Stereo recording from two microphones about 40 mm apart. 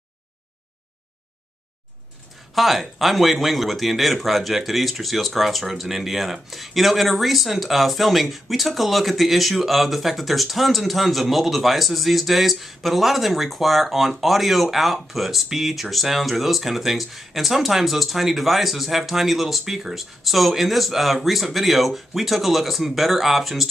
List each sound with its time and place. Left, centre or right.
2.5 s speech: centre